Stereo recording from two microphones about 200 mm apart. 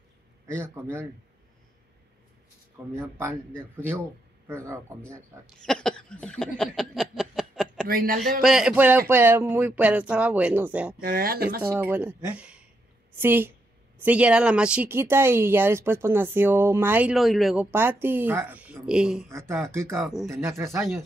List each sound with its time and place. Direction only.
0.5 s speech: 10° right (ahead or behind)
3.0 s speech: 10° right (ahead or behind)
4.5 s speech: 15° right (ahead or behind)
5.6 s a sound: 5° left (ahead or behind)
7.9 s speech: 45° right (ahead or behind)
8.4 s speech: centre (ahead or behind)
11.0 s speech: 45° right (ahead or behind)
11.6 s speech: 10° right (ahead or behind)
17.6 s speech: 10° right (ahead or behind)